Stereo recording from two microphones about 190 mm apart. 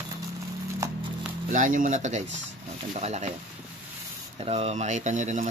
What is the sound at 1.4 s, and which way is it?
Speech, 45° right (ahead or behind).